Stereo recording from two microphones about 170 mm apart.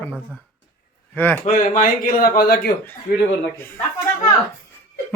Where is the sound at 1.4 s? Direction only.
50° left (ahead or behind).